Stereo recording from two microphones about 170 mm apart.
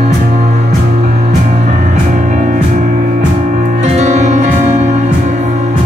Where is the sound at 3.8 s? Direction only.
45° right (ahead or behind).